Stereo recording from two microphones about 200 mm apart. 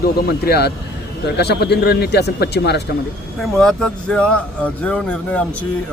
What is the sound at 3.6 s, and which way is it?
A man's voice, 5° left (ahead or behind).